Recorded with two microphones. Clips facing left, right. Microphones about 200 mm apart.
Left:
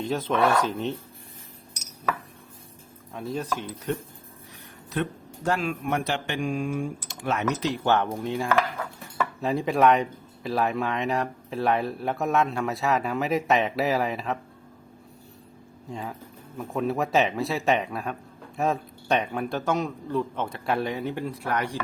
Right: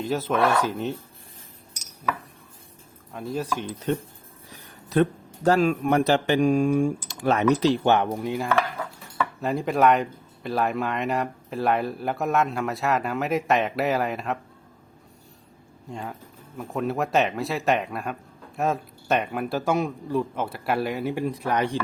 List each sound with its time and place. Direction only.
0.0 s speech: 5° right (ahead or behind)
3.1 s speech: centre (ahead or behind)
4.9 s speech: 35° right (ahead or behind)
7.9 s speech: 15° right (ahead or behind)
8.3 s speech: centre (ahead or behind)
15.9 s speech: centre (ahead or behind); by 21.8 s 20° right (ahead or behind)